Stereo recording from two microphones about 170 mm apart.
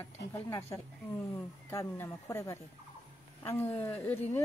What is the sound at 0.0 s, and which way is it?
Speech, 15° left (ahead or behind).